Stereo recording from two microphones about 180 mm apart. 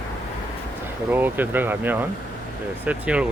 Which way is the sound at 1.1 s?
10° right (ahead or behind).